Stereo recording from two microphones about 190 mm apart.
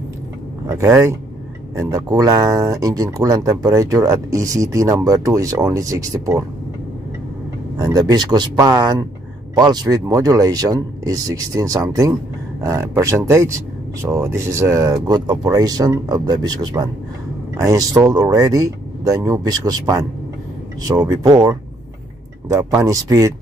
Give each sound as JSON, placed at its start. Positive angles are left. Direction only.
{"t": 0.7, "sound": "speech", "side_deg": -15}
{"t": 7.8, "sound": "speech", "side_deg": -20}
{"t": 22.8, "sound": "speech", "side_deg": -15}